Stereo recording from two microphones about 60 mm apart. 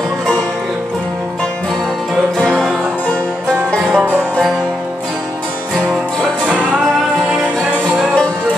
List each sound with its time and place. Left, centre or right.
3.9 s music: centre